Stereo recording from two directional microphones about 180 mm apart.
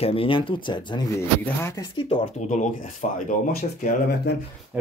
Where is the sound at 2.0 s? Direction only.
40° left (ahead or behind).